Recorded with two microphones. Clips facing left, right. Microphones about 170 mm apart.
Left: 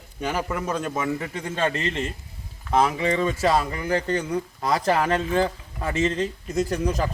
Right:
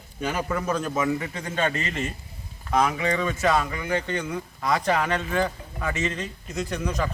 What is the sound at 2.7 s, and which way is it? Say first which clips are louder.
Speech: left 2 dB; 30° left (ahead or behind).